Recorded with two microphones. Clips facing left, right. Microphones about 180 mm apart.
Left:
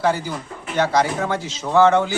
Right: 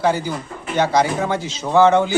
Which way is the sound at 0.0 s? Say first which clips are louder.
Right 2 dB; 20° right (ahead or behind).